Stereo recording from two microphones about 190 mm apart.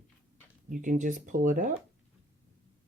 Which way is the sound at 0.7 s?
45° right (ahead or behind).